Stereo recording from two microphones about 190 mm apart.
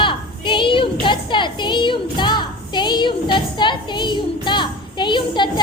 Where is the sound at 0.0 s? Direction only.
25° left (ahead or behind).